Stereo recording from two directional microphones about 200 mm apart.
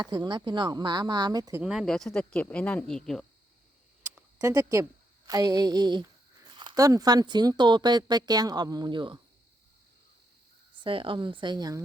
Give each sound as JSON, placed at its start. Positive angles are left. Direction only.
{"t": 0.0, "sound": "speech", "side_deg": -20}
{"t": 1.6, "sound": "speech", "side_deg": 0}
{"t": 4.1, "sound": "a woman's voice", "side_deg": -15}
{"t": 10.8, "sound": "speech", "side_deg": -25}